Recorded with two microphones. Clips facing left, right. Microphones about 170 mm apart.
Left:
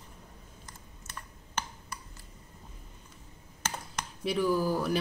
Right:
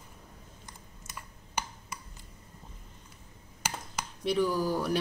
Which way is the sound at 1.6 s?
10° right (ahead or behind).